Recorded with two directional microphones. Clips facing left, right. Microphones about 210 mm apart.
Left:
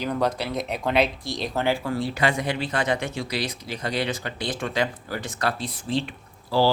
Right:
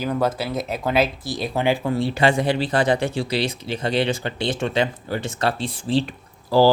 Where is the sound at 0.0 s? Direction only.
5° right (ahead or behind).